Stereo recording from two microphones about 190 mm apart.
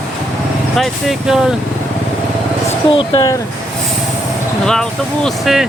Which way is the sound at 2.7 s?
30° left (ahead or behind).